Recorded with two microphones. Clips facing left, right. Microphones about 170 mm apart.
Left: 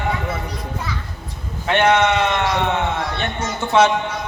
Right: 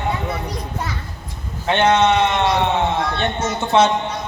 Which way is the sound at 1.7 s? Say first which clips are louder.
Right 1 dB; 20° right (ahead or behind).